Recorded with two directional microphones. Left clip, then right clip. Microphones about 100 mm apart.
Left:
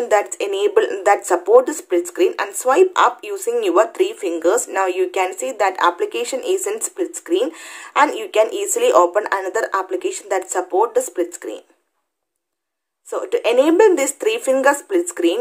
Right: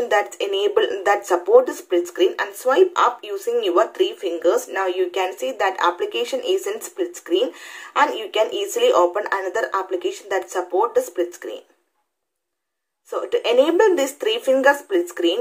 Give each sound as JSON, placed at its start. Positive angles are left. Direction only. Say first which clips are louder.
{"t": 0.0, "sound": "speech", "louder": "left 2 dB", "side_deg": 40}
{"t": 13.1, "sound": "speech", "louder": "left 2 dB", "side_deg": 40}